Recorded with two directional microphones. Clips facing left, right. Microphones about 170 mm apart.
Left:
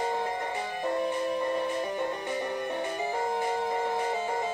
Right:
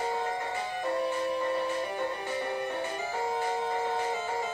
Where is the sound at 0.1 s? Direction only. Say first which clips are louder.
Left 1 dB; 20° left (ahead or behind).